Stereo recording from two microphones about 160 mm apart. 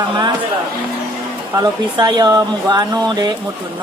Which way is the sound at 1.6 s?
25° right (ahead or behind).